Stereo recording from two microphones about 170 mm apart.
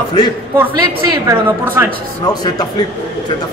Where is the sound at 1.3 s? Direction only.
15° right (ahead or behind).